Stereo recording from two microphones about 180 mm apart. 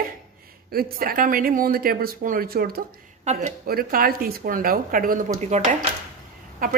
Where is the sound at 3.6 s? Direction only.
55° right (ahead or behind).